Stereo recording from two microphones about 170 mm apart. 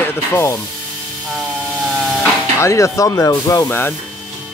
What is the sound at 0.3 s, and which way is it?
Speech, 15° left (ahead or behind).